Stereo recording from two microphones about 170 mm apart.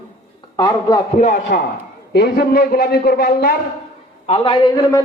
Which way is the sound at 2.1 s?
65° left (ahead or behind).